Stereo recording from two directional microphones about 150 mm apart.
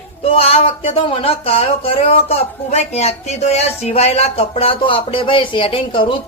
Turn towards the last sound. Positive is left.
turn(degrees=35)  # may be behind; listen again after turning